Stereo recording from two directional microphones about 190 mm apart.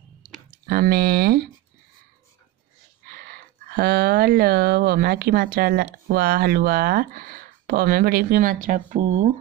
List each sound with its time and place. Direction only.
0.7 s speech: 55° right (ahead or behind)
3.1 s speech: 55° right (ahead or behind)